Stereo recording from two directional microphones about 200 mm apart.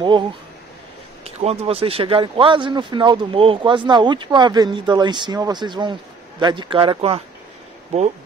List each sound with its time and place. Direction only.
1.2 s speech: 30° right (ahead or behind)